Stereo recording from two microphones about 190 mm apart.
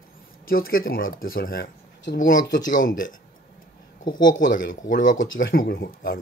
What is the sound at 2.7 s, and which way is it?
Speech, 45° left (ahead or behind).